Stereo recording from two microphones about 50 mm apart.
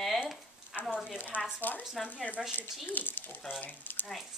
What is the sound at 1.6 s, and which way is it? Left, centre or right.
Speech, left.